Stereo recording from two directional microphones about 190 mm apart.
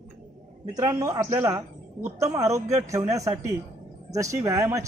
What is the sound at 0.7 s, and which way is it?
A man's voice, 15° right (ahead or behind).